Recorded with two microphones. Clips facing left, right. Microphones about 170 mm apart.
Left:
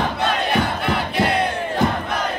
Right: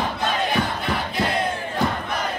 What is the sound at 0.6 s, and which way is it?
Crowd, 65° left (ahead or behind).